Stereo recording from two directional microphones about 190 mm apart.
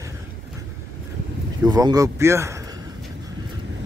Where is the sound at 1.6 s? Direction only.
20° right (ahead or behind).